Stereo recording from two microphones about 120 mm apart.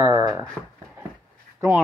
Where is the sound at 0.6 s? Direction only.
5° left (ahead or behind).